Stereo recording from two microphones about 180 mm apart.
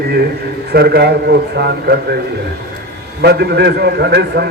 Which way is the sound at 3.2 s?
65° right (ahead or behind).